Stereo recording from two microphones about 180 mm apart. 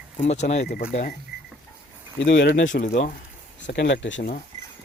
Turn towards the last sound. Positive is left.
turn(degrees=90)